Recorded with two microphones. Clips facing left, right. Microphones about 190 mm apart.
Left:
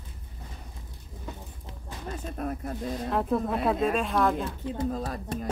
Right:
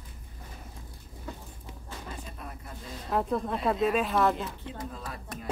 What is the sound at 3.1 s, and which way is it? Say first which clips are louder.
Speech: left 1 dB; centre (ahead or behind).